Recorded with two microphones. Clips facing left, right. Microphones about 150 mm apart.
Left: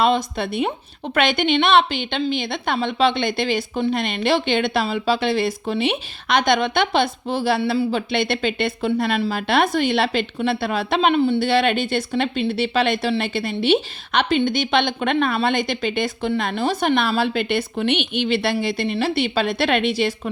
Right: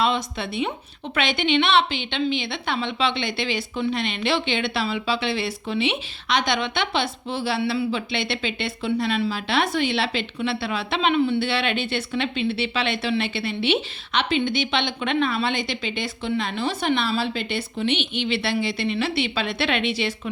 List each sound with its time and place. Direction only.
0.0 s speech: 45° left (ahead or behind)